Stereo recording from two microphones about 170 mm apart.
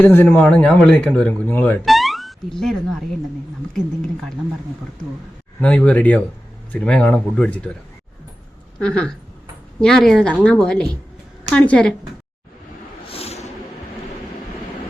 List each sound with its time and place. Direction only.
0.0 s speech: 10° left (ahead or behind)
1.8 s speech: centre (ahead or behind)
5.5 s speech: 5° left (ahead or behind)
8.8 s speech: 5° left (ahead or behind)
13.1 s snort: 35° left (ahead or behind)